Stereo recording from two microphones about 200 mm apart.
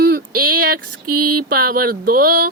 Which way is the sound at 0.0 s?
50° right (ahead or behind).